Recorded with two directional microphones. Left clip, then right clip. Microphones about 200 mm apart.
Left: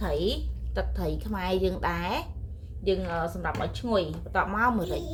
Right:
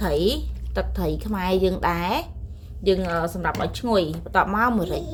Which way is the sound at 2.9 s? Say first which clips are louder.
Right 6 dB; 45° right (ahead or behind).